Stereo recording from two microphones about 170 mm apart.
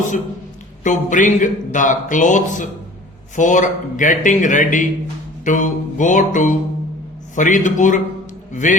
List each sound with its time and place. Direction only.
0.9 s a man's voice: 50° left (ahead or behind)